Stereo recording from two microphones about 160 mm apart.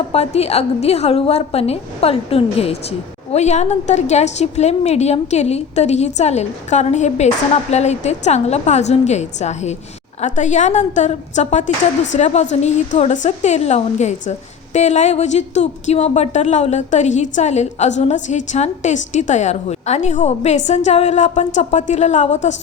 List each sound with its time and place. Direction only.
0.1 s a woman's voice: 40° left (ahead or behind)